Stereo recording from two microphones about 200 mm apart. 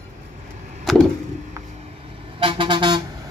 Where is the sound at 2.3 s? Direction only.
25° right (ahead or behind).